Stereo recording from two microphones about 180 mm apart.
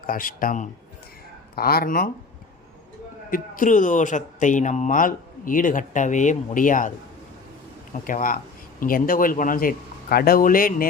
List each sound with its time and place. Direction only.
0.1 s a man's voice: 50° left (ahead or behind)
3.2 s a man's voice: 50° left (ahead or behind)
7.9 s a man's voice: 50° left (ahead or behind)